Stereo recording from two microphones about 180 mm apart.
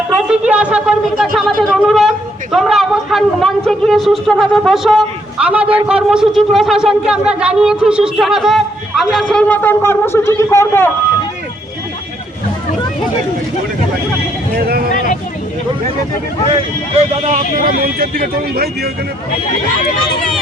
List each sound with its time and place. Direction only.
0.1 s speech: 5° right (ahead or behind); by 10.9 s 15° left (ahead or behind)
17.7 s speech: 55° right (ahead or behind)
20.0 s speech: 5° left (ahead or behind)